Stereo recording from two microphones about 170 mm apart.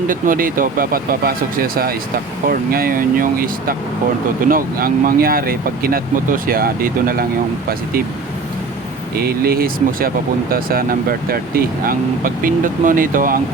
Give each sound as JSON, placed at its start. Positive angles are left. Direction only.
{"t": 0.1, "sound": "speech", "side_deg": -55}
{"t": 9.1, "sound": "speech", "side_deg": -65}